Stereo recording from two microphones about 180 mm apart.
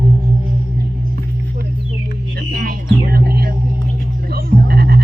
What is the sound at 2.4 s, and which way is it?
Music, 55° right (ahead or behind).